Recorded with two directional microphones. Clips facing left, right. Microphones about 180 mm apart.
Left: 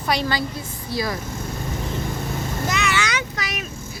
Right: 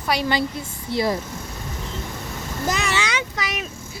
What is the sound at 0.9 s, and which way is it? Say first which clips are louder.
Speech: right 4 dB; 25° right (ahead or behind).